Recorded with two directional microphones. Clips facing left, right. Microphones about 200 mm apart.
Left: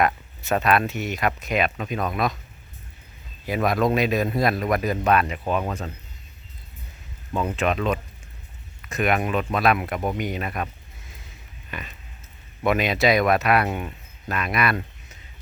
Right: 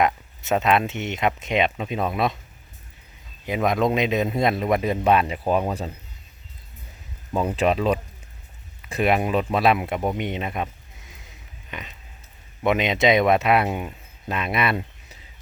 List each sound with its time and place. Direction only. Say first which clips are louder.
0.0 s speech: right 1 dB; 20° right (ahead or behind)
3.4 s speech: even; 20° right (ahead or behind)
7.5 s speech: right 3 dB; 30° right (ahead or behind)
12.6 s speech: right 1 dB; 20° right (ahead or behind)